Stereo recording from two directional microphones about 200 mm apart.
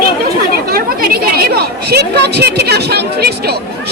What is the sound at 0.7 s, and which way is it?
Chatter, 50° right (ahead or behind).